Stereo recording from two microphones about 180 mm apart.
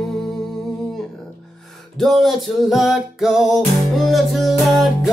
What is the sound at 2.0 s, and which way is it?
Music, centre (ahead or behind).